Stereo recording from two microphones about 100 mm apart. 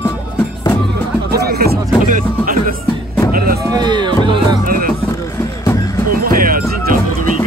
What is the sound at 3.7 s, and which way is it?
Speech, 50° right (ahead or behind).